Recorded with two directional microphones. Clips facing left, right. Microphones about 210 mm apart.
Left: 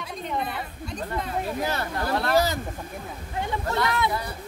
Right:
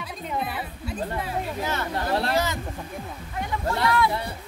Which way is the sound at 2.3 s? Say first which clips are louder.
Left 3 dB; 35° left (ahead or behind).